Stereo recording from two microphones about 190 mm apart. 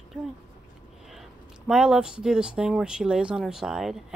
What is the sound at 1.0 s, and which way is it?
Speech, centre (ahead or behind).